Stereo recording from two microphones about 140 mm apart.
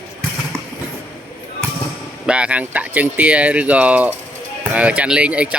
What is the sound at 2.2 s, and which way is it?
Speech, 10° right (ahead or behind).